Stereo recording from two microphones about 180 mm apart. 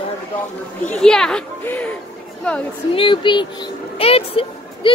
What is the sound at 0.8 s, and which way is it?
A child's voice, 5° left (ahead or behind).